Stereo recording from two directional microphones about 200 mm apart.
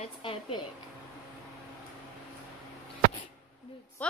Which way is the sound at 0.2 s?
25° left (ahead or behind).